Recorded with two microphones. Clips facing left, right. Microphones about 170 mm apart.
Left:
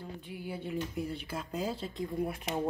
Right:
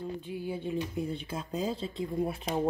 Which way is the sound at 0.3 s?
20° right (ahead or behind).